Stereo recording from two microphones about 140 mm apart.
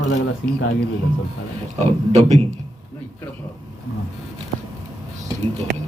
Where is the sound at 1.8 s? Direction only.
55° right (ahead or behind).